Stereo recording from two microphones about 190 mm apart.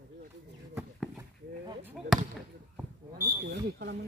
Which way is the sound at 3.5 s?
55° right (ahead or behind).